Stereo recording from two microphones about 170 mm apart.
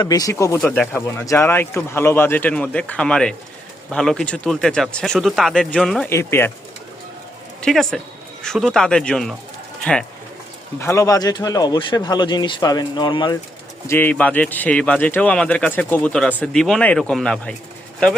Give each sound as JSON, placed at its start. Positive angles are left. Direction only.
{"t": 0.0, "sound": "speech", "side_deg": 20}
{"t": 6.1, "sound": "speech", "side_deg": 15}
{"t": 7.6, "sound": "speech", "side_deg": 0}
{"t": 10.8, "sound": "speech", "side_deg": 15}
{"t": 13.8, "sound": "speech", "side_deg": 10}